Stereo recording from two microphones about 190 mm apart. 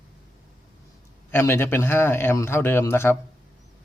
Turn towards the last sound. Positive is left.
turn(degrees=10)  # may be behind; listen again after turning